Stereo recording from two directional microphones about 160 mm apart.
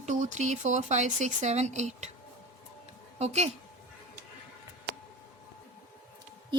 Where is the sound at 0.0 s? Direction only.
50° right (ahead or behind).